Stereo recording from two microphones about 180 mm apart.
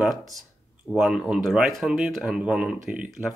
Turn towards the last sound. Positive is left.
turn(degrees=-5)  # may be behind; listen again after turning